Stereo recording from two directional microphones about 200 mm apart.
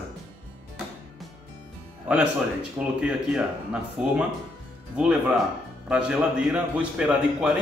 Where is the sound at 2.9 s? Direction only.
5° right (ahead or behind).